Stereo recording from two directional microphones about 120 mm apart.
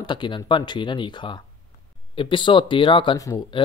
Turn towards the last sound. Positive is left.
turn(degrees=30)  # may be behind; listen again after turning